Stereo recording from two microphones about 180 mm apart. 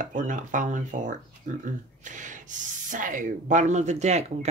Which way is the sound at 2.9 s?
45° right (ahead or behind).